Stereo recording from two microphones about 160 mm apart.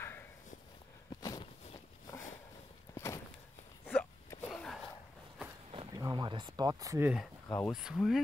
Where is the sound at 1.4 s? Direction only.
35° left (ahead or behind).